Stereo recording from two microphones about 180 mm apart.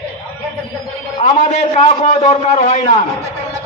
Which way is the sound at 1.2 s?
40° left (ahead or behind).